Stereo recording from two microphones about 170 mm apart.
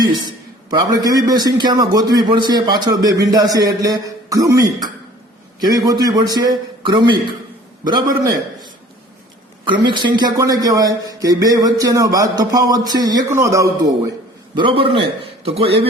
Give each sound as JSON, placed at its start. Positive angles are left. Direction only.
{"t": 0.7, "sound": "a man's voice", "side_deg": -25}
{"t": 3.8, "sound": "a sound", "side_deg": -20}
{"t": 5.5, "sound": "a man's voice", "side_deg": -25}
{"t": 9.6, "sound": "a man's voice", "side_deg": -30}
{"t": 14.5, "sound": "a man's voice", "side_deg": -30}